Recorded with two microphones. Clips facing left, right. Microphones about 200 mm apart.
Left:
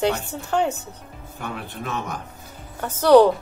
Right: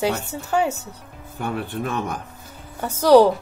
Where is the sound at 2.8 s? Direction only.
10° right (ahead or behind).